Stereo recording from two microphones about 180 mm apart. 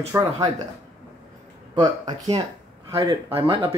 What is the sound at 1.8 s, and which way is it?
Speech, 20° right (ahead or behind).